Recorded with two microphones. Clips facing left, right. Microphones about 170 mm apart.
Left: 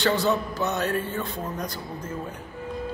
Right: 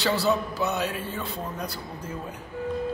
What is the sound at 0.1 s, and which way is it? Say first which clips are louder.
Speech: left 1 dB; 10° right (ahead or behind).